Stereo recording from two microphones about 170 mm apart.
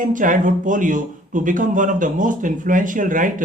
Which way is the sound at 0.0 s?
50° right (ahead or behind).